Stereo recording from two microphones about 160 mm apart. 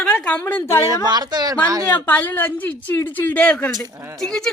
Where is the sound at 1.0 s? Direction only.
25° right (ahead or behind).